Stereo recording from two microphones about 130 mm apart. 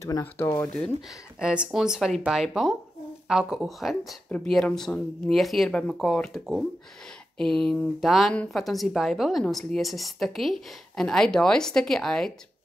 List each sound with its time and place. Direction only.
0.0 s speech: 20° left (ahead or behind)
0.7 s speech: 5° left (ahead or behind)
1.4 s speech: 10° right (ahead or behind)